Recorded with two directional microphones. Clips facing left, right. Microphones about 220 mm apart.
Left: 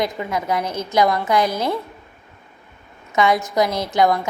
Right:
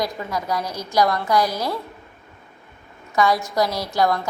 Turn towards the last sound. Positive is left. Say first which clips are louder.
# left 3 dB
turn(degrees=20)  # may be behind; listen again after turning